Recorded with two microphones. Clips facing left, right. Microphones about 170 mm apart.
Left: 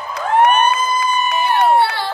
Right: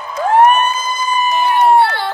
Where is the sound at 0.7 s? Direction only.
65° left (ahead or behind).